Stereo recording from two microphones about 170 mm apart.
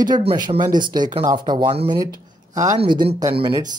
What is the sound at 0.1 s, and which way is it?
Speech, 30° right (ahead or behind).